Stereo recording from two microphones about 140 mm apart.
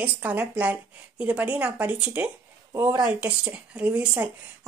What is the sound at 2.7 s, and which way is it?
Speech, 25° right (ahead or behind).